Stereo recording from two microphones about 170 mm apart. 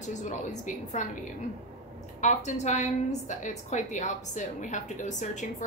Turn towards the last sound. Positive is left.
turn(degrees=45)  # may be behind; listen again after turning